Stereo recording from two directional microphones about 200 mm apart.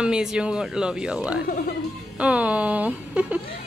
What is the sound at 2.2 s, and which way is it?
A woman's voice, 5° right (ahead or behind).